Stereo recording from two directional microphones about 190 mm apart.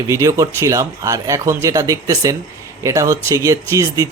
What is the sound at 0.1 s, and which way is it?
Speech, 15° right (ahead or behind).